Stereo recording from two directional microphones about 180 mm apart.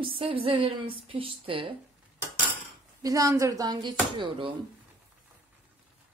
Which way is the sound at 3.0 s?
20° right (ahead or behind).